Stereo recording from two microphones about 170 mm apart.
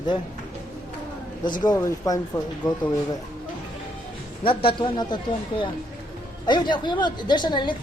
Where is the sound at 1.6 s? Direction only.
20° left (ahead or behind).